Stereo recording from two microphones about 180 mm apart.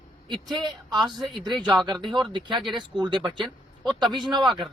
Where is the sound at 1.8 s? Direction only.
25° right (ahead or behind).